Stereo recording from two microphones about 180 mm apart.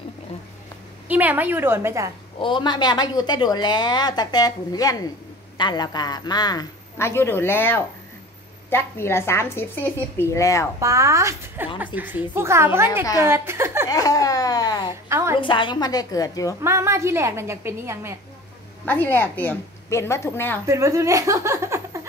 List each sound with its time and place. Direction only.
1.0 s a woman's voice: 10° right (ahead or behind)
2.4 s a woman's voice: 25° left (ahead or behind)
10.8 s a woman's voice: 15° right (ahead or behind)
13.8 s a sound: 20° left (ahead or behind)
15.0 s a sound: 15° right (ahead or behind)
15.4 s a woman's voice: 25° left (ahead or behind)
16.6 s a woman's voice: 15° right (ahead or behind)
18.9 s a woman's voice: 10° left (ahead or behind)
20.6 s speech: 15° right (ahead or behind)